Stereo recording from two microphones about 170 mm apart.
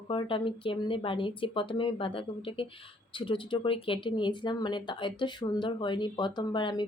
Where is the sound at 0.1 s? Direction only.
30° left (ahead or behind).